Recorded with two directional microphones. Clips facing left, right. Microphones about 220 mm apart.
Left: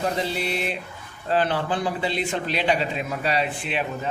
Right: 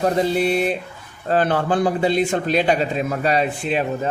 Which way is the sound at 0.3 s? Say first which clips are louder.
Right 8 dB; 45° right (ahead or behind).